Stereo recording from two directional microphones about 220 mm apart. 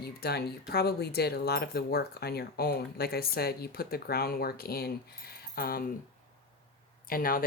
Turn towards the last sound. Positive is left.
turn(degrees=40)  # may be behind; listen again after turning